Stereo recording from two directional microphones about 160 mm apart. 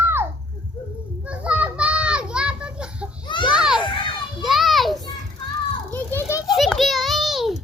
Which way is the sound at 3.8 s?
30° left (ahead or behind).